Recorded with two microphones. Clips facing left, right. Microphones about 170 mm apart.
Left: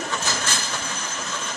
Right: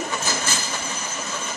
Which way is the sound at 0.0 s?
10° right (ahead or behind).